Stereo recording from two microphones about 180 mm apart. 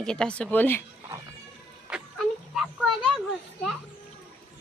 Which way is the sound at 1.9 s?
5° right (ahead or behind).